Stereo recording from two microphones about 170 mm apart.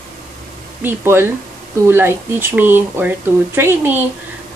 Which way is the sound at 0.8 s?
15° right (ahead or behind).